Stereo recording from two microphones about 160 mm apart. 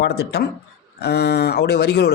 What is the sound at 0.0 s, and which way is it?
A man's voice, 90° left.